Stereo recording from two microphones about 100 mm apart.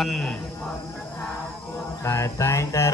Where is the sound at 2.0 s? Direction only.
30° left (ahead or behind).